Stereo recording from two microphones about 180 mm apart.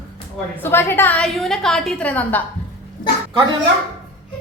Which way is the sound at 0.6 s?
10° left (ahead or behind).